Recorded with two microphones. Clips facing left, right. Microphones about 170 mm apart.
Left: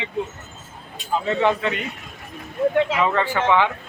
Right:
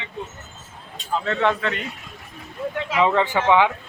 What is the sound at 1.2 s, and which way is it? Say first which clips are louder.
Speech: left 2 dB; 5° left (ahead or behind).